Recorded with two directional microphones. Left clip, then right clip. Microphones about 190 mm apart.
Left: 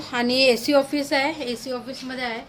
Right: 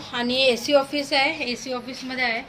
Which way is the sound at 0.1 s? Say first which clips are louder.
Left 2 dB; 50° left (ahead or behind).